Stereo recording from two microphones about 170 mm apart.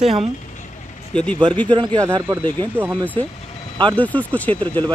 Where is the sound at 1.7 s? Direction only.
25° right (ahead or behind).